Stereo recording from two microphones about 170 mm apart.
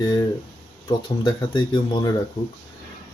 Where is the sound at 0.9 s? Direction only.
25° left (ahead or behind).